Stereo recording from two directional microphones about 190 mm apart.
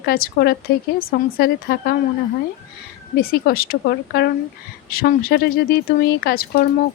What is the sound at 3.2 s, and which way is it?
Speech, 50° left (ahead or behind).